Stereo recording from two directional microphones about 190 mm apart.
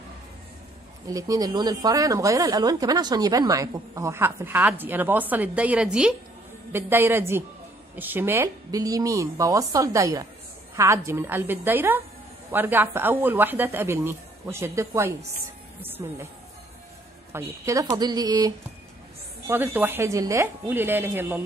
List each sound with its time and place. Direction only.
1.0 s speech: 20° right (ahead or behind)
17.3 s speech: 15° right (ahead or behind)